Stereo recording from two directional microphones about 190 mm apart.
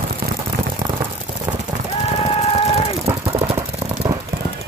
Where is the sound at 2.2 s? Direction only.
30° left (ahead or behind).